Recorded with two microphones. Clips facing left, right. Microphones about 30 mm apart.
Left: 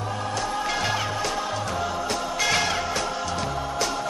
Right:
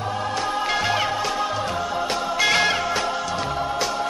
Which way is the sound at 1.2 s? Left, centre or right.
Centre.